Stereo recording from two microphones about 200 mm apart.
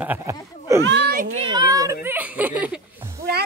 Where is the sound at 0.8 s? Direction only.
60° right (ahead or behind).